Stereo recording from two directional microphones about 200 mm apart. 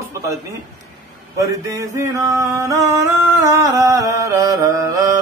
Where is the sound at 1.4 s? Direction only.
15° right (ahead or behind).